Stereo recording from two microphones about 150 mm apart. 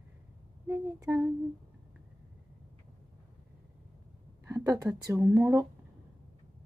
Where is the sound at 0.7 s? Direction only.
15° right (ahead or behind).